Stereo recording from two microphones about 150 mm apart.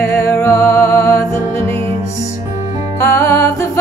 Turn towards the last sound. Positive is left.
turn(degrees=15)  # may be behind; listen again after turning